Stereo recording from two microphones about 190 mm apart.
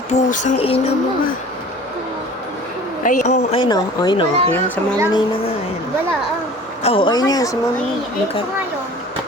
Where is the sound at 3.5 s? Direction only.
20° left (ahead or behind).